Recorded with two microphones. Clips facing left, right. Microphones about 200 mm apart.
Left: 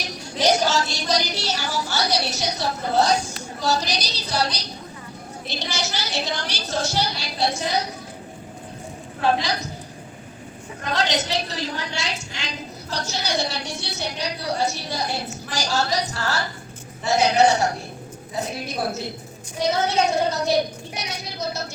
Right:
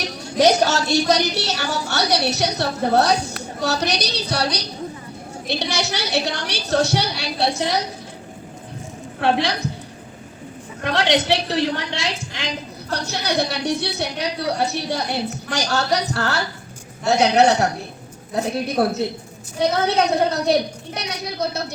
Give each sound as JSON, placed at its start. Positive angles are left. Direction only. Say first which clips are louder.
{"t": 0.0, "sound": "a woman's voice", "louder": "right 6 dB", "side_deg": -65}
{"t": 9.2, "sound": "a woman's voice", "louder": "right 2 dB", "side_deg": -65}
{"t": 10.8, "sound": "a woman's voice", "louder": "right 5 dB", "side_deg": -65}